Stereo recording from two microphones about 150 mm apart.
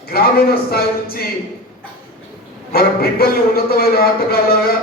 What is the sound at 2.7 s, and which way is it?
Speech, 90° left.